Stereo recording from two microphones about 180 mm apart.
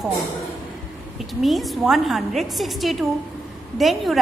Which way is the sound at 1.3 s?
Centre (ahead or behind).